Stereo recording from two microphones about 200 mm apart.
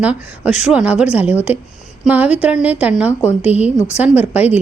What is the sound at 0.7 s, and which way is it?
A woman's voice, 5° right (ahead or behind).